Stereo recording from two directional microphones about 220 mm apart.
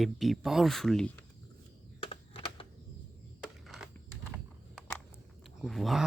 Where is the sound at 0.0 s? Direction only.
Centre (ahead or behind).